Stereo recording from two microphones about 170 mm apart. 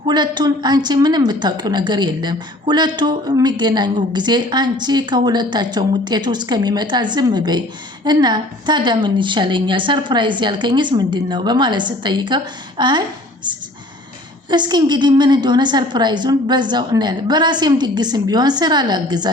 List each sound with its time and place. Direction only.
0.1 s a woman's voice: 25° right (ahead or behind)